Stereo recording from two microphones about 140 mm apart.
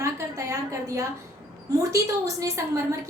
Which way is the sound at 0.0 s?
20° right (ahead or behind).